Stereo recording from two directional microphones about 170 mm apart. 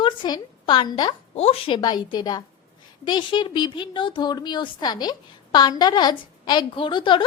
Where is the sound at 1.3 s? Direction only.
35° left (ahead or behind).